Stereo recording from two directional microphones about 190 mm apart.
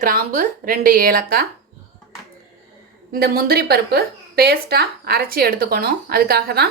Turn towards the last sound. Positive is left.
turn(degrees=-55)  # may be behind; listen again after turning